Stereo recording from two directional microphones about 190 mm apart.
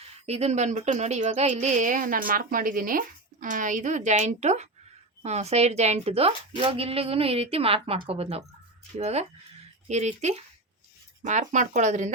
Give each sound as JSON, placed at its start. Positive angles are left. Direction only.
{"t": 0.3, "sound": "speech", "side_deg": -35}